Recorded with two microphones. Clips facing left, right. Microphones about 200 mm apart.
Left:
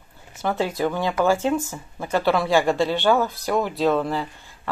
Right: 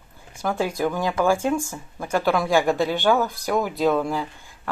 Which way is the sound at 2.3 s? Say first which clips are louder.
Left 1 dB; centre (ahead or behind).